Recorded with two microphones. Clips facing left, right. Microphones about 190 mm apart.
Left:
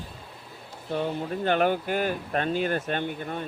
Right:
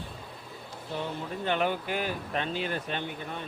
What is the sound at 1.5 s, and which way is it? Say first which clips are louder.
Speech: left 5 dB; 50° left (ahead or behind).